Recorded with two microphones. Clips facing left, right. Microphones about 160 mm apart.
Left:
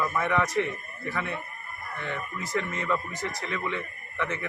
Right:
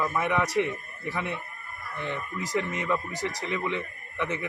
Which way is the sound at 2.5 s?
15° right (ahead or behind).